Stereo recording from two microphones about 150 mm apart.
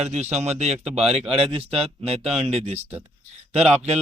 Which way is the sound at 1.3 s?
40° right (ahead or behind).